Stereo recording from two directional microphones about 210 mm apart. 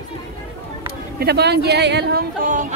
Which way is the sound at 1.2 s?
50° right (ahead or behind).